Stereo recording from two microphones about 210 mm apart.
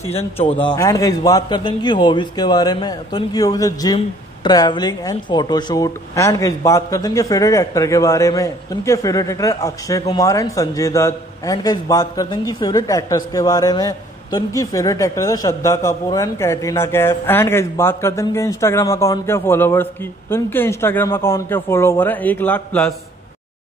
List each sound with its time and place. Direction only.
0.1 s a man's voice: 30° left (ahead or behind); by 22.9 s 5° left (ahead or behind)